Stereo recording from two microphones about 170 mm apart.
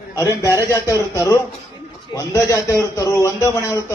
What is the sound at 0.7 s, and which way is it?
A man's voice, 20° left (ahead or behind).